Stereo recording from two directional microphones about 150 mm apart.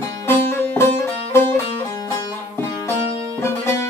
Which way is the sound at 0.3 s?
15° left (ahead or behind).